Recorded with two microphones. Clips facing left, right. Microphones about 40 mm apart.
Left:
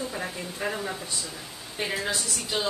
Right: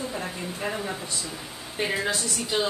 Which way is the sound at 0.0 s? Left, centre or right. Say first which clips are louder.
Right 1 dB; centre.